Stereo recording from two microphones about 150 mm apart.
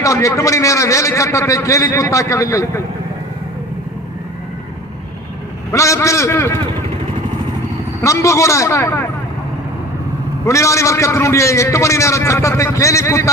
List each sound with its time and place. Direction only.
0.0 s a man's voice: 20° left (ahead or behind)
5.7 s a man's voice: 20° left (ahead or behind)
8.0 s a man's voice: 20° left (ahead or behind)
10.4 s a man's voice: 20° left (ahead or behind)